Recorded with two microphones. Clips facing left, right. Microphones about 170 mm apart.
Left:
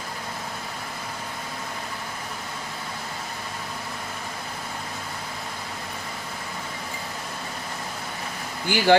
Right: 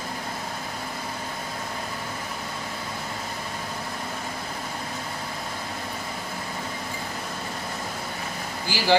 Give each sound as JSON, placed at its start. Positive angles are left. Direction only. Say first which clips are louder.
{"t": 8.6, "sound": "speech", "louder": "left 6 dB", "side_deg": 55}